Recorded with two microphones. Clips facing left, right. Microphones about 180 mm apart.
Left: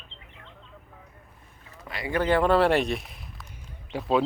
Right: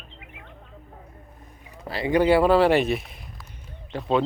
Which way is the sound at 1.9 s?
30° right (ahead or behind).